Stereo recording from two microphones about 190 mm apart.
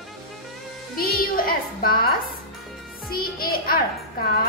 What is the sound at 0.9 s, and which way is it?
A woman's voice, 50° left (ahead or behind).